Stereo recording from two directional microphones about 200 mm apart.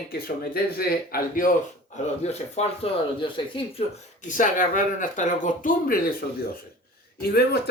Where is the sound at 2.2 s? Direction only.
35° left (ahead or behind).